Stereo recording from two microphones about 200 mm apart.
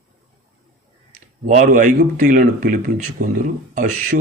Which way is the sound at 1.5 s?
40° right (ahead or behind).